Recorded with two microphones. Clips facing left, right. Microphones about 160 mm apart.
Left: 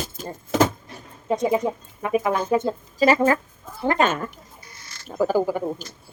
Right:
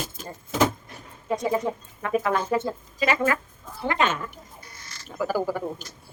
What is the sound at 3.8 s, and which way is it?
Speech, 45° left (ahead or behind).